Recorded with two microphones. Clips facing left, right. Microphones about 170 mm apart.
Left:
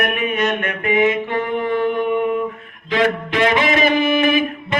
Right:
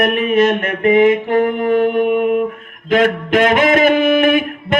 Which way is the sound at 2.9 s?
50° right (ahead or behind).